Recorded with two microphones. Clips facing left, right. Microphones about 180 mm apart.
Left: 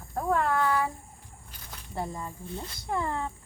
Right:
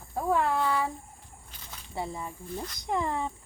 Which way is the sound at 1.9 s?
5° right (ahead or behind).